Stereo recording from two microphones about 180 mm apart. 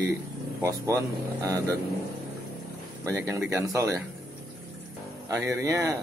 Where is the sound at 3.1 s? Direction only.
15° right (ahead or behind).